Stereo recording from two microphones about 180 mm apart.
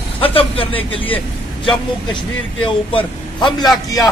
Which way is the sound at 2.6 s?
25° left (ahead or behind).